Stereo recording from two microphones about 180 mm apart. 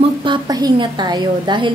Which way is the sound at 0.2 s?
25° right (ahead or behind).